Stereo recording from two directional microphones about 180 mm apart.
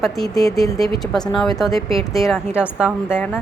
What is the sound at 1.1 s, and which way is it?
A woman's voice, 5° left (ahead or behind).